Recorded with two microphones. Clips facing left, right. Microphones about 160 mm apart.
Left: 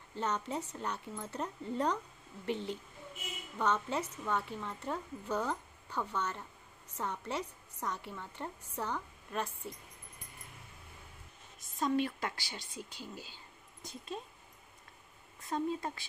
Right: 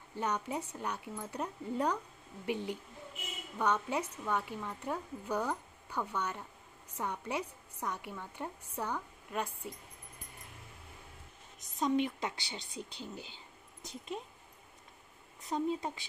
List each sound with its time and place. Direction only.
0.1 s a woman's voice: 10° right (ahead or behind)
11.6 s a woman's voice: 20° right (ahead or behind)
15.4 s a woman's voice: 15° right (ahead or behind)